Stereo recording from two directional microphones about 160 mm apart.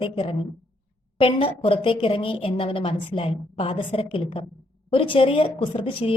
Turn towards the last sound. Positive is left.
turn(degrees=35)  # may be behind; listen again after turning